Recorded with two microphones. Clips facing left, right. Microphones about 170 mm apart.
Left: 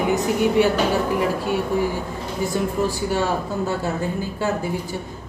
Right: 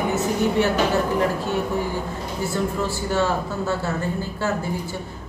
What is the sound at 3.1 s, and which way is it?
Speech, 15° left (ahead or behind).